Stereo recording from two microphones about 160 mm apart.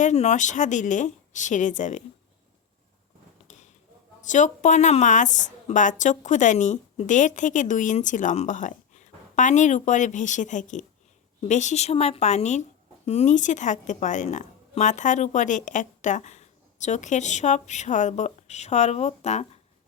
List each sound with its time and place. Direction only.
0.0 s a woman's voice: 45° left (ahead or behind)
3.4 s a sound: 45° left (ahead or behind)
4.3 s a woman's voice: 50° left (ahead or behind)